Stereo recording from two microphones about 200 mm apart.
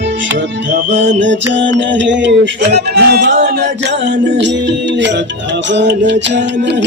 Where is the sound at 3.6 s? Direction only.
60° right (ahead or behind).